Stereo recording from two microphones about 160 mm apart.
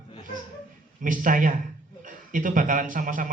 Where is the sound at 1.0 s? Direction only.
55° right (ahead or behind).